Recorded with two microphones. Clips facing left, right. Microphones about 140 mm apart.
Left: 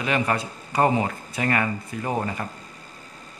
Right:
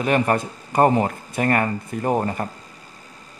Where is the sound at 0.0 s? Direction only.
45° right (ahead or behind).